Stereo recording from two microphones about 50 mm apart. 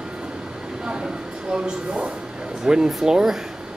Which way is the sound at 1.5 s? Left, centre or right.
Centre.